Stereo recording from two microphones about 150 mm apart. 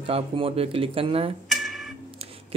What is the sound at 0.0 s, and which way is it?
Speech, 40° right (ahead or behind).